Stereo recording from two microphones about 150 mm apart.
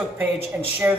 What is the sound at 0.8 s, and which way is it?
Speech, 15° right (ahead or behind).